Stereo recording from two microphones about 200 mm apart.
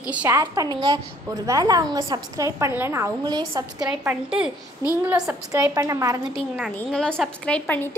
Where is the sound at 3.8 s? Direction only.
5° right (ahead or behind).